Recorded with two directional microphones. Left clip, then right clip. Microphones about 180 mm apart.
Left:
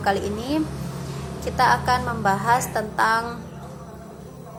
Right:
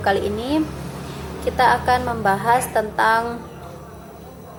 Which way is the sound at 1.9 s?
10° left (ahead or behind).